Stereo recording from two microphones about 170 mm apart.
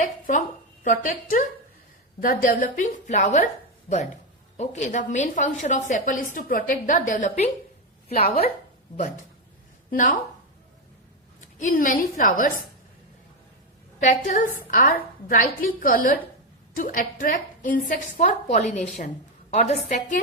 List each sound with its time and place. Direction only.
0.0 s a sound: 50° left (ahead or behind)
0.9 s a woman's voice: 50° left (ahead or behind)
9.9 s a woman's voice: 55° left (ahead or behind)
11.3 s a woman's voice: 50° left (ahead or behind)
14.0 s a woman's voice: 45° left (ahead or behind)